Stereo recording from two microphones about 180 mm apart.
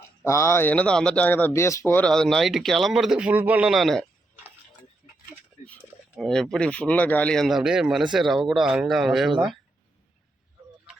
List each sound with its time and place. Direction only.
0.3 s speech: 15° left (ahead or behind); by 4.0 s centre (ahead or behind)
5.0 s a sound: 35° left (ahead or behind)
5.6 s speech: 5° left (ahead or behind)